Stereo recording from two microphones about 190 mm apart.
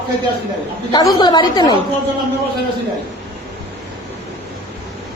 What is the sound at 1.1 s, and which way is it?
Speech, 20° left (ahead or behind).